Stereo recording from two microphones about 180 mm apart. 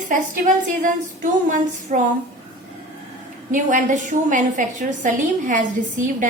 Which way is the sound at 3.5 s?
45° right (ahead or behind).